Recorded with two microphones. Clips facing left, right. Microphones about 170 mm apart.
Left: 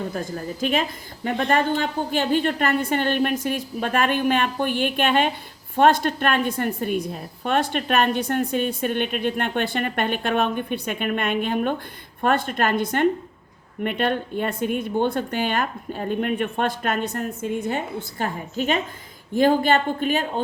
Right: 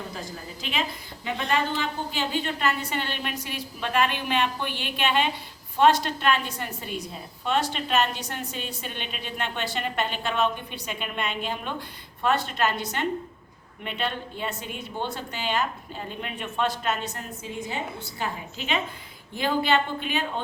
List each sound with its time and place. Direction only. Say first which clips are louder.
0.6 s a woman's voice: left 7 dB; 50° left (ahead or behind)